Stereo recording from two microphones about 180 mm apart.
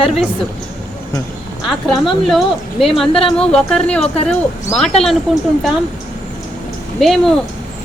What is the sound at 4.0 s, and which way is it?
Speech, 35° left (ahead or behind).